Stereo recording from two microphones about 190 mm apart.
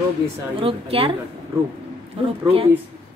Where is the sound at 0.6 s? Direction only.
30° right (ahead or behind).